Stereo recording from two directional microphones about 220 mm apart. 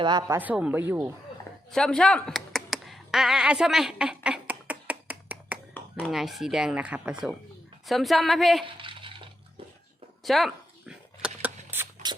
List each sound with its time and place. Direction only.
0.0 s speech: 20° right (ahead or behind)
1.7 s computer keyboard: 5° left (ahead or behind)
5.7 s speech: 5° left (ahead or behind)
8.6 s a sound: 25° right (ahead or behind)
10.2 s dog: centre (ahead or behind)